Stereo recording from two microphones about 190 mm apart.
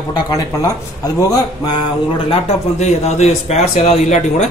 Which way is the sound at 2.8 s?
35° left (ahead or behind).